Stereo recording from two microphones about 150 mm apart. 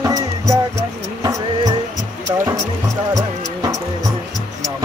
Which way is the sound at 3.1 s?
25° right (ahead or behind).